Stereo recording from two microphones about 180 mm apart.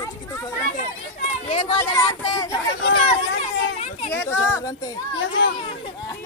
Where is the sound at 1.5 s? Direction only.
30° left (ahead or behind).